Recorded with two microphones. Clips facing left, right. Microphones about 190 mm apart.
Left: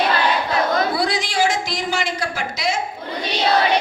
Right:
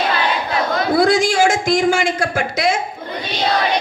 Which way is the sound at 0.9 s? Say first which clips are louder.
Right 7 dB; 45° right (ahead or behind).